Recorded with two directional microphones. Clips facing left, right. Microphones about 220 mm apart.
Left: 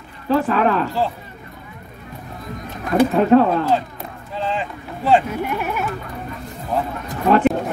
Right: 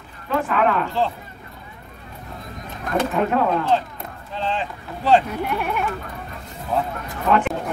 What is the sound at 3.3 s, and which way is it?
Speech, 30° left (ahead or behind).